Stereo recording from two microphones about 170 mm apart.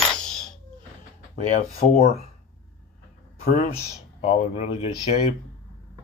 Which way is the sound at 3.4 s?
55° left (ahead or behind).